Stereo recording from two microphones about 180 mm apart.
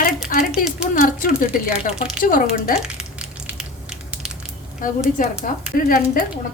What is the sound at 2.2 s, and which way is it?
Speech, 50° left (ahead or behind).